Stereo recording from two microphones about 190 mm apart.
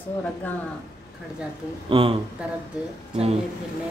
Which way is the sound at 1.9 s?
25° right (ahead or behind).